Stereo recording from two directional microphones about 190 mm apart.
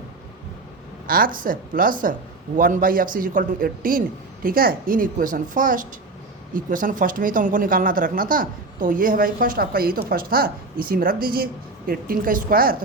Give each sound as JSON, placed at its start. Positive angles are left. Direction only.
{"t": 1.0, "sound": "speech", "side_deg": -50}